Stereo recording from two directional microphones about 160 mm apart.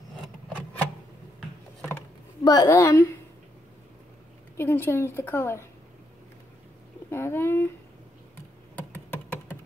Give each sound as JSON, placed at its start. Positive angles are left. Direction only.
{"t": 2.4, "sound": "a woman's voice", "side_deg": 20}
{"t": 4.6, "sound": "a woman's voice", "side_deg": 15}
{"t": 7.1, "sound": "a woman's voice", "side_deg": 15}
{"t": 8.7, "sound": "computer keyboard", "side_deg": 15}